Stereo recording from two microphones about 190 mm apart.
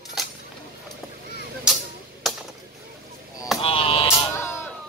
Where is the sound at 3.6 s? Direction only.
30° left (ahead or behind).